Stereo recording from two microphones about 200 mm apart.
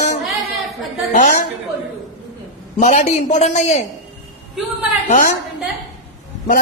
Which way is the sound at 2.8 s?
40° left (ahead or behind).